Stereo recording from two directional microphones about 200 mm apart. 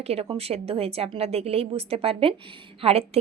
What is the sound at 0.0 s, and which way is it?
A woman's voice, 30° right (ahead or behind).